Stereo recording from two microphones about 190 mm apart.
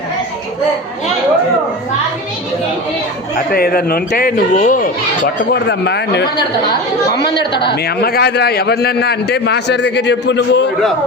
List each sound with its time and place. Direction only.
3.3 s speech: 55° left (ahead or behind)
5.6 s a man's voice: 65° left (ahead or behind)
7.6 s a man's voice: 60° left (ahead or behind)